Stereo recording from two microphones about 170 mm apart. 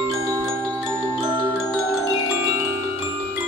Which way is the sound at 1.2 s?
Centre (ahead or behind).